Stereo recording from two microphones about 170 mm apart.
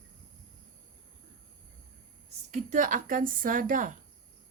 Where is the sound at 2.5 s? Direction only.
50° right (ahead or behind).